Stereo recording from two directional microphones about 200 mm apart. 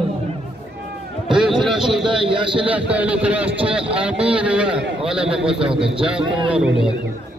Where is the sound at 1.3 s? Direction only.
5° right (ahead or behind).